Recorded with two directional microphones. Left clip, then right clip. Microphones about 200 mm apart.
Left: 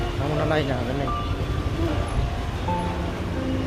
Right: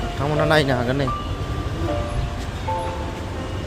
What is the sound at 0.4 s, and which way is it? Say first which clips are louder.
Speech: right 7 dB; 20° right (ahead or behind).